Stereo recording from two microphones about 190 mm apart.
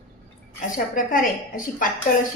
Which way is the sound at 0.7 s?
45° left (ahead or behind).